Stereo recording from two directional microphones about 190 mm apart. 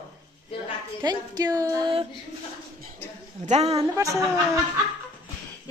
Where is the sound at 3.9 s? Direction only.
15° right (ahead or behind).